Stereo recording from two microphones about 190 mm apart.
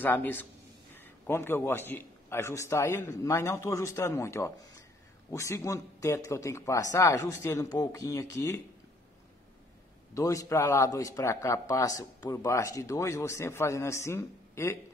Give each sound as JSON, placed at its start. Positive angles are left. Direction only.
{"t": 0.0, "sound": "a man's voice", "side_deg": 10}
{"t": 10.1, "sound": "a man's voice", "side_deg": 15}